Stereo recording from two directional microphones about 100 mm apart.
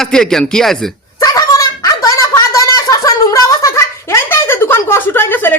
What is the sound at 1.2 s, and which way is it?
Speech, 40° left (ahead or behind).